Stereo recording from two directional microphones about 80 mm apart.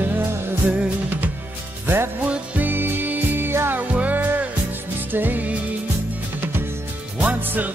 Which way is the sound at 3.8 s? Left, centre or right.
Centre.